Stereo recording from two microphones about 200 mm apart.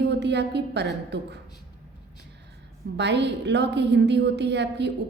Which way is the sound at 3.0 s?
60° right (ahead or behind).